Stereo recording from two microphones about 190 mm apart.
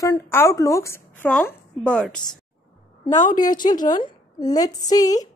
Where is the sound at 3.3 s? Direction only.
20° left (ahead or behind).